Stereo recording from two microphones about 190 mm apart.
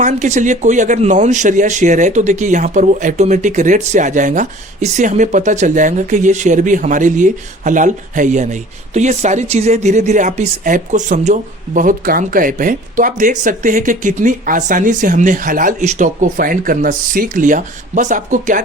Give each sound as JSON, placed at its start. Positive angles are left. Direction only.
{"t": 0.0, "sound": "speech", "side_deg": -40}